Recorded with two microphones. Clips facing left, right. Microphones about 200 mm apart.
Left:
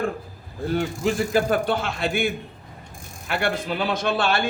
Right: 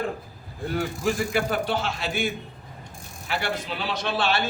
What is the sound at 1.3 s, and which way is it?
Speech, 45° left (ahead or behind).